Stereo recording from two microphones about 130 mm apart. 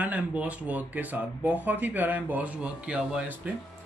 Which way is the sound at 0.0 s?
10° right (ahead or behind).